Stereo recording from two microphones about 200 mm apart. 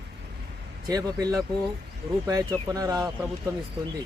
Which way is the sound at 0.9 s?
20° right (ahead or behind).